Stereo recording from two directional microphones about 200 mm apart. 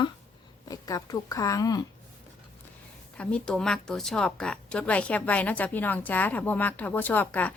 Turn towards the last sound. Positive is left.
turn(degrees=10)  # may be behind; listen again after turning